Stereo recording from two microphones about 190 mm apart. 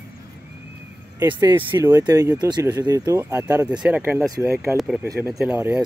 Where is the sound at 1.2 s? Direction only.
10° right (ahead or behind).